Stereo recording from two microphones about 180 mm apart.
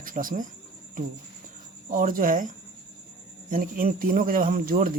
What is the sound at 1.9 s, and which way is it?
Speech, 50° right (ahead or behind).